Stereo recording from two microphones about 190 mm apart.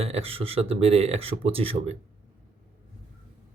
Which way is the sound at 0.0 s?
30° right (ahead or behind).